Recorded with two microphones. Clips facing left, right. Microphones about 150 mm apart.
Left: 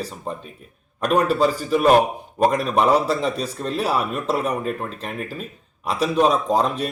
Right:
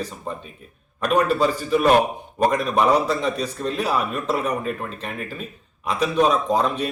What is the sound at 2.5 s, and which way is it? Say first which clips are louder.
A man's voice: right 1 dB; 35° left (ahead or behind).